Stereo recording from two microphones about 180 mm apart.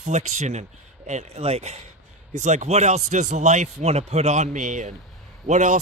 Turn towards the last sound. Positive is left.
turn(degrees=-40)  # may be behind; listen again after turning